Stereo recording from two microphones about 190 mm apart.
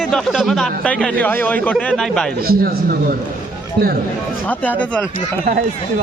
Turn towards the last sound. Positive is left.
turn(degrees=10)  # may be behind; listen again after turning